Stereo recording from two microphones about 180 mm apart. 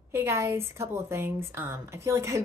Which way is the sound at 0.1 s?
15° right (ahead or behind).